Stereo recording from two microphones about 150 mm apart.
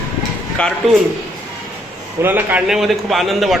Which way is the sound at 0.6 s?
10° left (ahead or behind).